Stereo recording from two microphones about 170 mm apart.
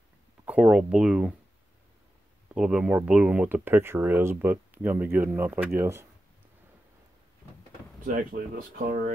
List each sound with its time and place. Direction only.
0.5 s speech: 5° right (ahead or behind)
2.5 s speech: 5° right (ahead or behind)
8.0 s speech: 50° right (ahead or behind)